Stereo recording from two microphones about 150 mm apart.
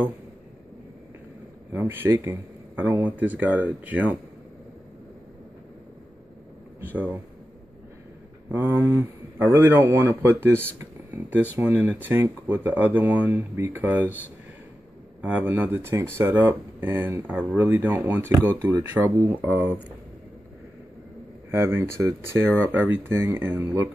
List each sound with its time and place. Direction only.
1.7 s speech: 10° right (ahead or behind)
6.8 s speech: 10° right (ahead or behind)
8.5 s speech: 15° right (ahead or behind)
15.2 s speech: 10° right (ahead or behind)
17.3 s speech: 5° right (ahead or behind)
17.6 s speech: 15° right (ahead or behind)
21.5 s speech: 20° right (ahead or behind)